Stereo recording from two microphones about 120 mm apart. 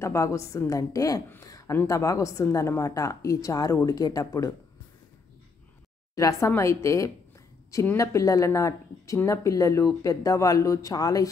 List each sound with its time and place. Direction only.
0.0 s speech: 25° left (ahead or behind)
1.4 s a sound: 30° left (ahead or behind)
1.8 s speech: 25° left (ahead or behind)
6.1 s speech: 25° left (ahead or behind)